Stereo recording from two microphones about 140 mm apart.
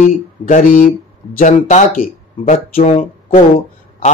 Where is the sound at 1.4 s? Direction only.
60° left (ahead or behind); by 2.8 s 80° left.